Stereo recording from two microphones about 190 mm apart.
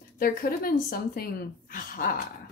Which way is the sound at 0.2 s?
50° left (ahead or behind).